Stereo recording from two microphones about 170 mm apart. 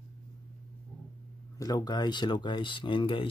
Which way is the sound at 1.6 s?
25° left (ahead or behind).